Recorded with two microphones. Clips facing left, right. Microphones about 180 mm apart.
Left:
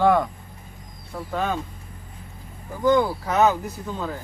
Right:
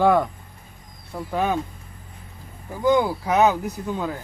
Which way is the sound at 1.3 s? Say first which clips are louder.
Right 3 dB; 15° right (ahead or behind).